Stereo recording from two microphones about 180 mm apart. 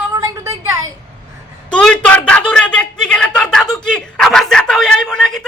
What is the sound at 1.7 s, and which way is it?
Speech, 5° left (ahead or behind).